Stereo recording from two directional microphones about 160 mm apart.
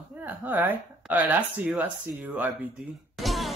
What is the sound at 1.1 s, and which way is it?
Speech, 10° right (ahead or behind).